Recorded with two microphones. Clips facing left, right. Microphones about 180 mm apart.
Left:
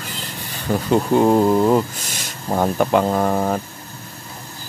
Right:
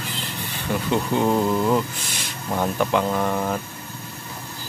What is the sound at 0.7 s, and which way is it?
Speech, 45° left (ahead or behind).